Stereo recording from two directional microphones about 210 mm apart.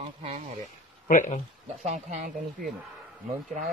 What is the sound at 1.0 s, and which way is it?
Speech, 35° left (ahead or behind).